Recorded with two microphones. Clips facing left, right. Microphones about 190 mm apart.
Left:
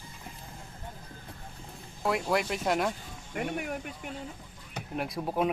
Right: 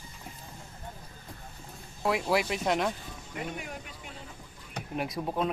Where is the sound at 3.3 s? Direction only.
50° left (ahead or behind).